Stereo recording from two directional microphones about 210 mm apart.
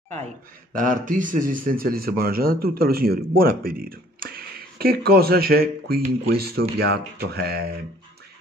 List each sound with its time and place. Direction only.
0.7 s speech: 40° right (ahead or behind)